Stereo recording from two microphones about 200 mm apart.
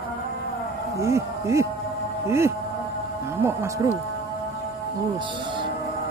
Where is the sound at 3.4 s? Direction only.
15° right (ahead or behind).